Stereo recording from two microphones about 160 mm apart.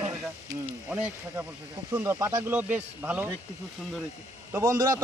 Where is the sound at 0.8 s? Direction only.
10° right (ahead or behind).